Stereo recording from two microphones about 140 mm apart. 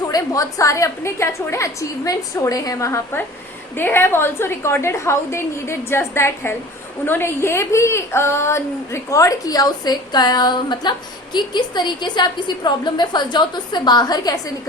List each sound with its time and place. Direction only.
0.1 s a woman's voice: 25° left (ahead or behind)